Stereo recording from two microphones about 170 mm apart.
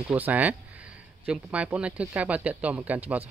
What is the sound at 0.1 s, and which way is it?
Speech, 10° right (ahead or behind).